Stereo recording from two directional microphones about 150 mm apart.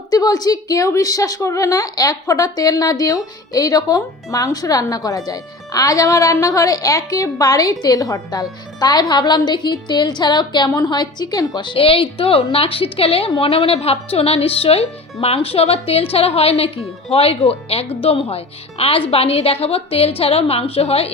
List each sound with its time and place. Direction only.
0.1 s speech: 25° left (ahead or behind); by 21.1 s 40° left (ahead or behind)